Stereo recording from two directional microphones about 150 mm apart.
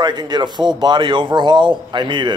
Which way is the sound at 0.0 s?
30° right (ahead or behind).